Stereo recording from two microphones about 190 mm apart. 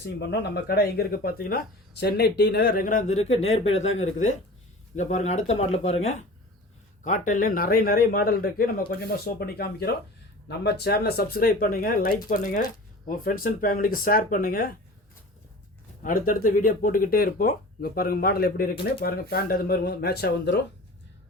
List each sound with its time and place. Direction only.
0.0 s speech: 65° left (ahead or behind)
16.0 s speech: 45° left (ahead or behind); by 20.7 s 60° left (ahead or behind)